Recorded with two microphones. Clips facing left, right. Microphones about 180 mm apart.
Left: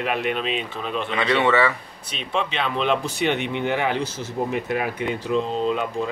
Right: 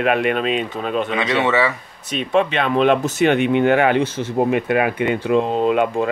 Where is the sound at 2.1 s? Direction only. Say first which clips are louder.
Right 8 dB; 50° right (ahead or behind).